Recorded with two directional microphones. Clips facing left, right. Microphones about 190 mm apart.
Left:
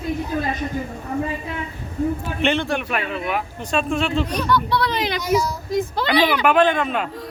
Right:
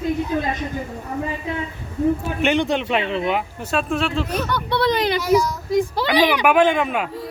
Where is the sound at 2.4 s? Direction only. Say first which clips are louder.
Right 1 dB; 15° right (ahead or behind).